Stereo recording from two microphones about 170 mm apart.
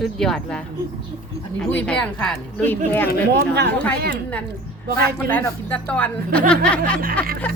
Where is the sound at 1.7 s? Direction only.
5° left (ahead or behind).